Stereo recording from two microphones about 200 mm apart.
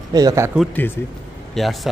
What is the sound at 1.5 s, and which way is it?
Speech, centre (ahead or behind).